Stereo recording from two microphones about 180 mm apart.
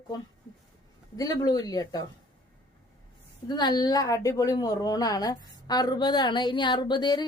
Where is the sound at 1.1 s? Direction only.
20° left (ahead or behind).